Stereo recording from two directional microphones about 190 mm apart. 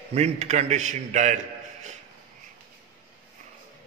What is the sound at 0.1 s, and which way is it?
A man's voice, 35° right (ahead or behind).